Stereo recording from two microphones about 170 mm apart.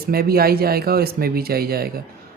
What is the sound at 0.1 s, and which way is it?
A woman's voice, 65° right (ahead or behind).